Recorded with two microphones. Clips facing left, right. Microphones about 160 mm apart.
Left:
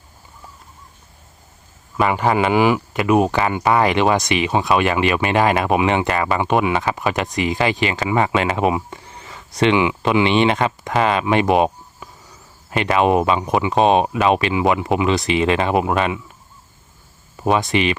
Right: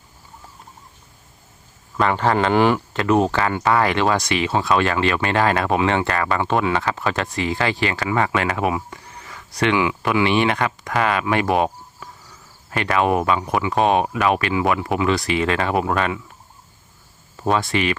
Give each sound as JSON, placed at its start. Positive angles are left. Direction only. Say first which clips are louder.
{"t": 2.0, "sound": "speech", "louder": "left 1 dB", "side_deg": 10}
{"t": 17.4, "sound": "speech", "louder": "left 2 dB", "side_deg": 15}